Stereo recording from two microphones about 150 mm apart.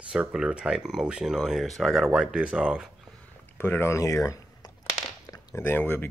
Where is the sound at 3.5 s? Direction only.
15° left (ahead or behind).